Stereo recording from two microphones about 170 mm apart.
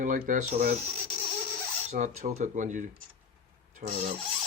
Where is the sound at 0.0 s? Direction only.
50° right (ahead or behind).